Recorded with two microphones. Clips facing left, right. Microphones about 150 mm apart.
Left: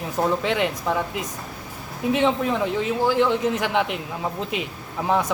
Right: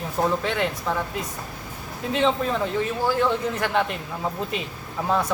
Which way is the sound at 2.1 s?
15° left (ahead or behind).